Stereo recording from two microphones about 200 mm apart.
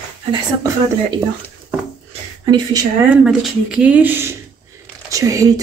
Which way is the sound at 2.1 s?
20° right (ahead or behind).